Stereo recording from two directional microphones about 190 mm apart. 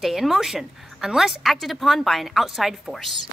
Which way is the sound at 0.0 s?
Centre (ahead or behind).